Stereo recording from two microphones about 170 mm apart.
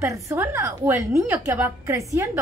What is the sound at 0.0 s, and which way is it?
A woman's voice, 15° right (ahead or behind).